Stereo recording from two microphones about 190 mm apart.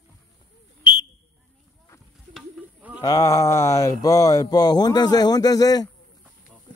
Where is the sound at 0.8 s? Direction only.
25° left (ahead or behind).